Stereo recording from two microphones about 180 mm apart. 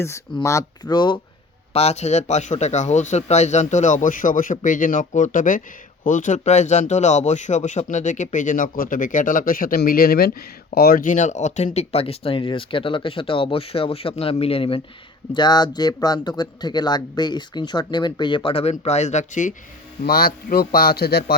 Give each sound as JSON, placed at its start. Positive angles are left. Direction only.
{"t": 0.4, "sound": "speech", "side_deg": 20}
{"t": 1.7, "sound": "speech", "side_deg": 35}
{"t": 20.1, "sound": "speech", "side_deg": 55}